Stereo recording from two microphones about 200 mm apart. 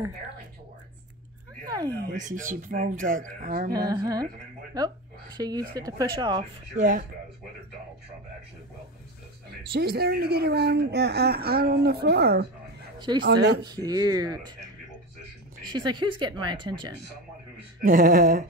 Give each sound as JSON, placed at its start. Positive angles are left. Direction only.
{"t": 1.7, "sound": "speech", "side_deg": -20}
{"t": 2.1, "sound": "speech", "side_deg": -40}
{"t": 3.7, "sound": "speech", "side_deg": -20}
{"t": 6.8, "sound": "speech", "side_deg": -45}
{"t": 9.7, "sound": "speech", "side_deg": -50}
{"t": 13.7, "sound": "speech", "side_deg": -20}
{"t": 15.6, "sound": "speech", "side_deg": -20}
{"t": 17.8, "sound": "speech", "side_deg": -45}